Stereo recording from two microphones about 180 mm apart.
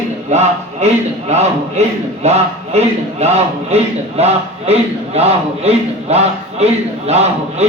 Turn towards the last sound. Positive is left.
turn(degrees=-35)  # may be behind; listen again after turning